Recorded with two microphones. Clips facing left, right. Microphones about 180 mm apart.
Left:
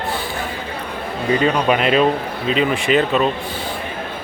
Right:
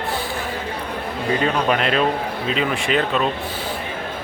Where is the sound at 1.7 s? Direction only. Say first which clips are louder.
Left 4 dB; 5° left (ahead or behind).